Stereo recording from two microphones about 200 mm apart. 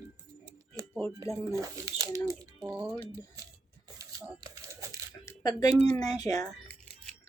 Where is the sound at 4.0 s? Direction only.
15° right (ahead or behind).